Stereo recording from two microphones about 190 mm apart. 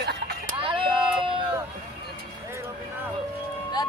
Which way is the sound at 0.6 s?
25° right (ahead or behind).